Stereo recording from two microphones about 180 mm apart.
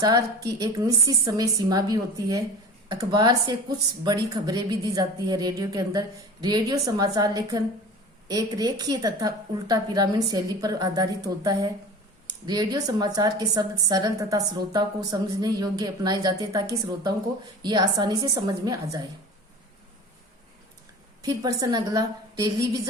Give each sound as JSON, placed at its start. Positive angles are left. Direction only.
{"t": 0.0, "sound": "a woman's voice", "side_deg": -20}
{"t": 21.2, "sound": "a woman's voice", "side_deg": -20}